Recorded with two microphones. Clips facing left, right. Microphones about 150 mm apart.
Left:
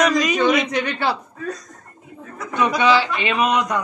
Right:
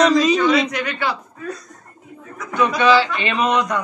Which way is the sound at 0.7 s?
30° left (ahead or behind).